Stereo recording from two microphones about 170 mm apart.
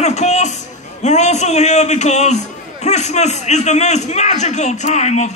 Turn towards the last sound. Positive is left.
turn(degrees=40)  # may be behind; listen again after turning